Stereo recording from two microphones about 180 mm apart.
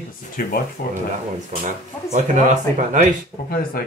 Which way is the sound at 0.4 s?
55° left (ahead or behind).